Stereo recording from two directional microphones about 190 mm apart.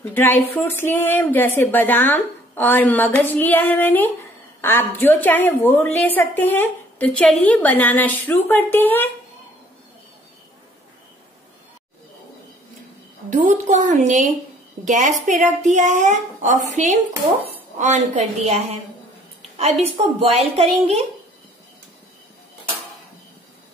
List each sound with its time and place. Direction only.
0.1 s a woman's voice: 10° left (ahead or behind)
13.3 s a woman's voice: 40° right (ahead or behind)